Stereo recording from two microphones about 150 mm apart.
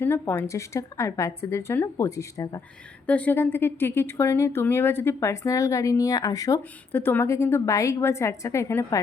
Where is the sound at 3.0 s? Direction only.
10° left (ahead or behind).